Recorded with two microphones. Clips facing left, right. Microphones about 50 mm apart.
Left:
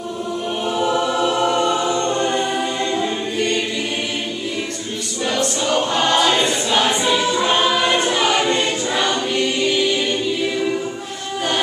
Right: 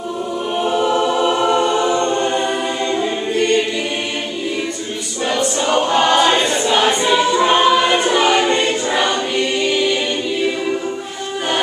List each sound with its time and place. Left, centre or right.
0.9 s choir: centre
5.2 s a capella: centre
5.9 s choir: centre